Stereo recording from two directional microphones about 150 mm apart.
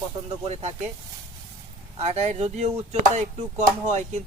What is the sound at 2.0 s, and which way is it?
Speech, 45° right (ahead or behind).